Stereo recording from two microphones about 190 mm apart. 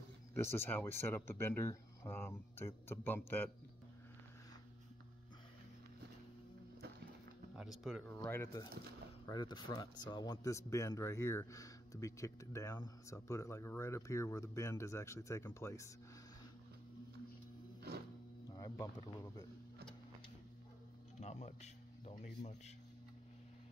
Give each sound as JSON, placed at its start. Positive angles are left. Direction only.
{"t": 0.3, "sound": "speech", "side_deg": 10}
{"t": 7.5, "sound": "speech", "side_deg": 0}
{"t": 8.2, "sound": "speech", "side_deg": 15}
{"t": 18.5, "sound": "speech", "side_deg": 20}
{"t": 21.2, "sound": "speech", "side_deg": 35}